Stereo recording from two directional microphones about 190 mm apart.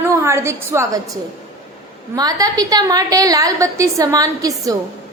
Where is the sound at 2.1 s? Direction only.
20° right (ahead or behind).